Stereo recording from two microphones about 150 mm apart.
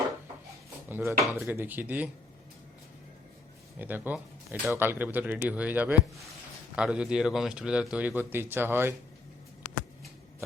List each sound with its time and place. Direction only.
0.9 s speech: 15° right (ahead or behind)
3.8 s speech: 10° right (ahead or behind)